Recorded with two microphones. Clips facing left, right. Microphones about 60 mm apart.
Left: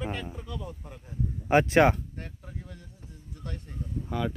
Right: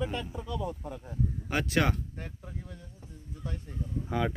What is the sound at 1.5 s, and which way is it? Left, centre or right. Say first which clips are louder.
Speech: left 9 dB; left.